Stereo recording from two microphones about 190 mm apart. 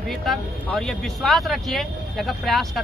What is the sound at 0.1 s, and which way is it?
Speech, centre (ahead or behind).